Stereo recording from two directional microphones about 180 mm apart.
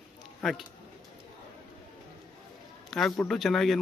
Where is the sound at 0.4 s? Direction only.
Centre (ahead or behind).